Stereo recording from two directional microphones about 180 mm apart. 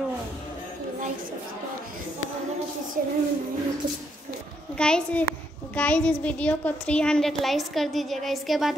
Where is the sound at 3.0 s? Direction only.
50° right (ahead or behind).